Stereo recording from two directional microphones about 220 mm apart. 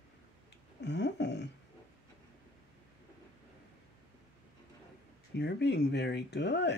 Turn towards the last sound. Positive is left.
turn(degrees=50)  # may be behind; listen again after turning